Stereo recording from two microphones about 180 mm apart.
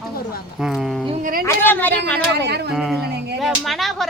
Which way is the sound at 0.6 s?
5° right (ahead or behind).